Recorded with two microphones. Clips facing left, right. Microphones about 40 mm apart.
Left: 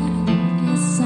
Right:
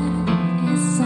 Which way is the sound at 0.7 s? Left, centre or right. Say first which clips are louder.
Even; centre.